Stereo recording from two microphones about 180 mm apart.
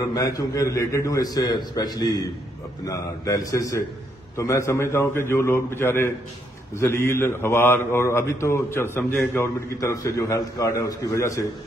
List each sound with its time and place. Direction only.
0.1 s a man's voice: 20° left (ahead or behind)